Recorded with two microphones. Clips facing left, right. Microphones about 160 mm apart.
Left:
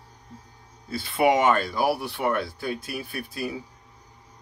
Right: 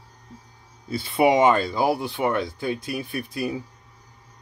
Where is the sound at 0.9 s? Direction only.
25° right (ahead or behind).